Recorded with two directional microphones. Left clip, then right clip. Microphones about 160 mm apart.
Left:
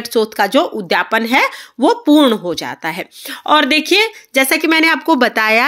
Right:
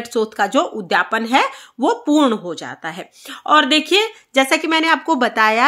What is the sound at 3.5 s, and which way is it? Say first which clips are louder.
Speech: left 2 dB; 20° left (ahead or behind).